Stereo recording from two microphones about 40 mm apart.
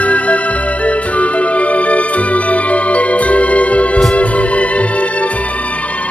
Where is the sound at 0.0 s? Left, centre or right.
Left.